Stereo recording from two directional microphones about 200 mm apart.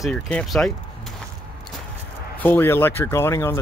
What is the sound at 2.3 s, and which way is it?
Speech, 10° left (ahead or behind).